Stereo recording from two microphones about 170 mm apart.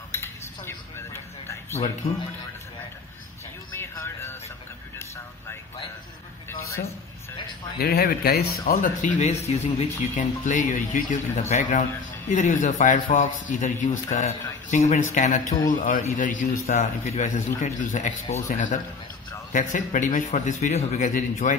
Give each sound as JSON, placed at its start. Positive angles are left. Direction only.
{"t": 0.1, "sound": "cutlery", "side_deg": 15}
{"t": 3.7, "sound": "music", "side_deg": 15}
{"t": 4.9, "sound": "speech", "side_deg": 15}
{"t": 7.8, "sound": "speech", "side_deg": 65}